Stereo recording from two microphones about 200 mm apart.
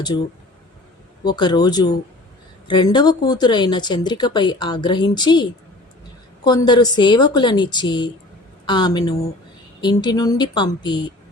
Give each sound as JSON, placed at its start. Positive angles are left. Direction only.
{"t": 1.3, "sound": "speech", "side_deg": 20}